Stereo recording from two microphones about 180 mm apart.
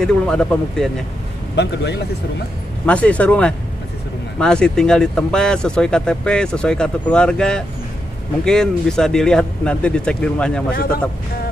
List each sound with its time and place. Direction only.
0.0 s speech: 5° left (ahead or behind)
1.5 s speech: 70° left (ahead or behind)
2.9 s speech: 5° left (ahead or behind)